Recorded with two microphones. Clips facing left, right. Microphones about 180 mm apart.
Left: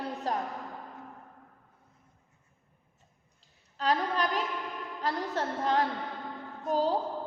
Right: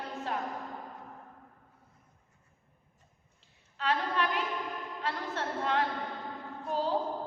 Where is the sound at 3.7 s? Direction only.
40° left (ahead or behind).